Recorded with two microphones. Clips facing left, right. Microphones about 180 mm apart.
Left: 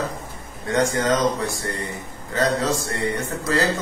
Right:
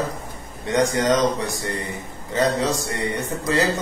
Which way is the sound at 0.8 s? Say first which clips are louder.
Right 1 dB; 20° right (ahead or behind).